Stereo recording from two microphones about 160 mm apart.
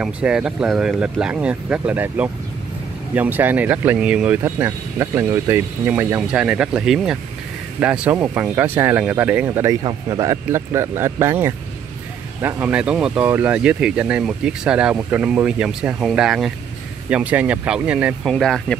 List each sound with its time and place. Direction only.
0.0 s speech: 5° right (ahead or behind)
9.7 s speech: 20° right (ahead or behind); by 18.3 s 5° right (ahead or behind)
18.3 s speech: 5° left (ahead or behind)